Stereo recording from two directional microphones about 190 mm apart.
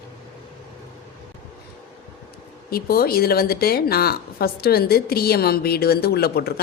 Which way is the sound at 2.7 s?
55° left (ahead or behind).